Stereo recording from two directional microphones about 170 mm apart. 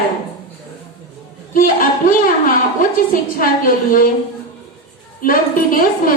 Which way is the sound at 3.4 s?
55° left (ahead or behind).